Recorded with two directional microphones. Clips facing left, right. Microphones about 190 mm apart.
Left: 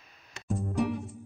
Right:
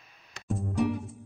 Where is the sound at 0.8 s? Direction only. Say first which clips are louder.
Right 2 dB; centre (ahead or behind).